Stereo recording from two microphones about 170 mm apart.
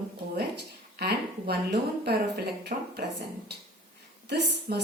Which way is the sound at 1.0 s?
70° right (ahead or behind).